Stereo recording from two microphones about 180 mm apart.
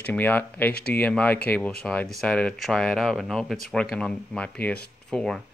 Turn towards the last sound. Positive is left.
turn(degrees=5)  # may be behind; listen again after turning